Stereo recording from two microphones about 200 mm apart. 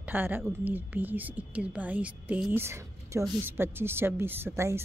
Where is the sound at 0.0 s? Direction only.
10° right (ahead or behind).